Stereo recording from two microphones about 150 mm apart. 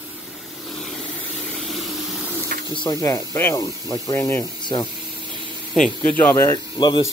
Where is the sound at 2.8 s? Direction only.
25° left (ahead or behind).